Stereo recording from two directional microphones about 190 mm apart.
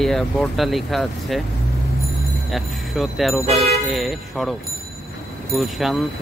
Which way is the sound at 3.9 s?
Centre (ahead or behind).